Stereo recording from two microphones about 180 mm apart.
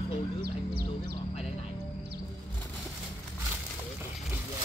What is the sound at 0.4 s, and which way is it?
Music, 65° right (ahead or behind).